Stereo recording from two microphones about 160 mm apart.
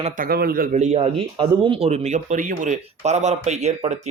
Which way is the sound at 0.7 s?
45° right (ahead or behind).